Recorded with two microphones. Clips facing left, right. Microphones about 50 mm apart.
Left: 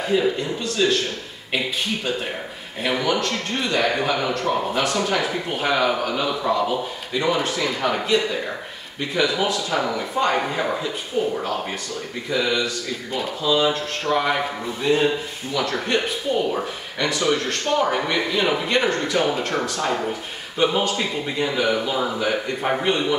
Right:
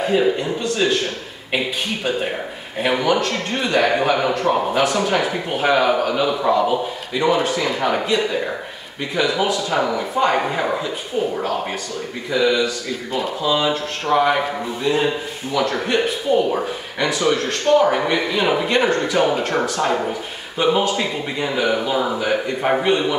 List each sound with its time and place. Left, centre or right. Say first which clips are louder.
0.0 s a man's voice: right 3 dB; centre
2.8 s a man's voice: right 4 dB; centre
9.3 s a man's voice: right 3 dB; centre
13.4 s a man's voice: even; centre